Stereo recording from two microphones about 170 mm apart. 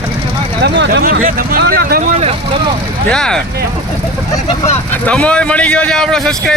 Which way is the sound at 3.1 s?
5° left (ahead or behind).